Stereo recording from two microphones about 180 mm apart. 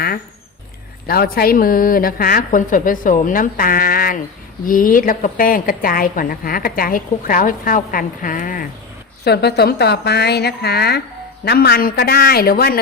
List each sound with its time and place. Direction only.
1.0 s a woman's voice: 60° left (ahead or behind)
9.2 s a woman's voice: 65° left (ahead or behind)